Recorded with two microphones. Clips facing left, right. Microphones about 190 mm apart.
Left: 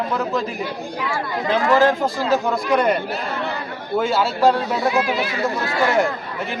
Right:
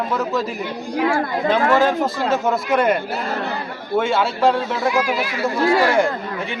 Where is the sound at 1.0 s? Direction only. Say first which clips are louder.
Right 7 dB; 50° right (ahead or behind).